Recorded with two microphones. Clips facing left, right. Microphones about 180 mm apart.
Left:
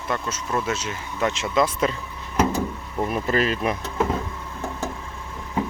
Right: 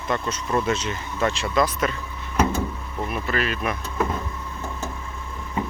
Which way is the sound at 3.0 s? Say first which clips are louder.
Left 4 dB; 35° left (ahead or behind).